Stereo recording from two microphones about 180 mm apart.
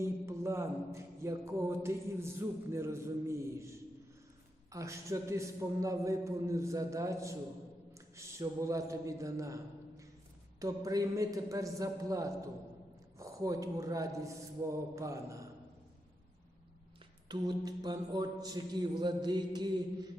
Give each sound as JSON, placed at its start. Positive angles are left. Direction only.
{"t": 0.0, "sound": "mantra", "side_deg": -15}
{"t": 4.7, "sound": "mantra", "side_deg": -15}
{"t": 10.6, "sound": "mantra", "side_deg": -20}
{"t": 13.1, "sound": "speech", "side_deg": -20}
{"t": 14.7, "sound": "mantra", "side_deg": -15}
{"t": 17.2, "sound": "mantra", "side_deg": -20}